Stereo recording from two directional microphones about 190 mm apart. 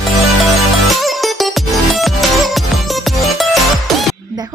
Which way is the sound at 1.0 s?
Centre (ahead or behind).